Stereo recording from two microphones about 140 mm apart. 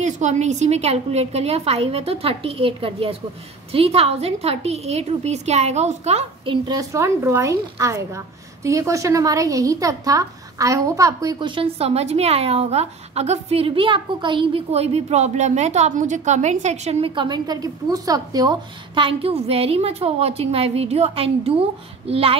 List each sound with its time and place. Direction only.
0.0 s a woman's voice: 55° right (ahead or behind)
17.1 s a woman's voice: 35° right (ahead or behind)